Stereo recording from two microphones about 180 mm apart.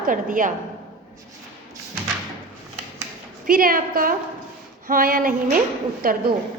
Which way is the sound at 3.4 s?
50° right (ahead or behind).